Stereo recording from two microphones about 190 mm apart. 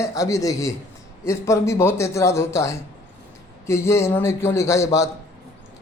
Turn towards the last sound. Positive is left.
turn(degrees=15)  # may be behind; listen again after turning